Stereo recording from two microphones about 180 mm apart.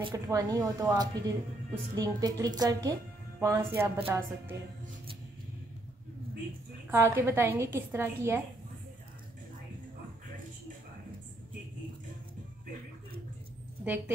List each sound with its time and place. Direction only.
0.0 s speech: 20° right (ahead or behind)
6.9 s speech: 15° right (ahead or behind)
13.8 s speech: 10° right (ahead or behind)